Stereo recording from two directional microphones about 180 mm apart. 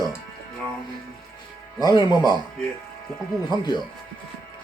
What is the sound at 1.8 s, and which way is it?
Speech, 20° left (ahead or behind).